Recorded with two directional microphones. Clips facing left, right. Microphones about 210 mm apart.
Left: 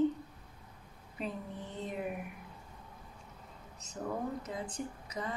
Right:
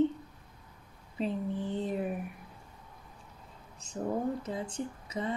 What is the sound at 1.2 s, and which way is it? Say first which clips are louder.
Speech: right 8 dB; 30° right (ahead or behind).